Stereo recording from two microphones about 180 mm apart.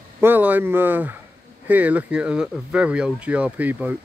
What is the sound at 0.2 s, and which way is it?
Speech, 10° right (ahead or behind).